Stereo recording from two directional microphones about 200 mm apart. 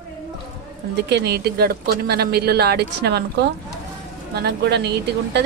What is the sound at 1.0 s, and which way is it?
Speech, 55° right (ahead or behind).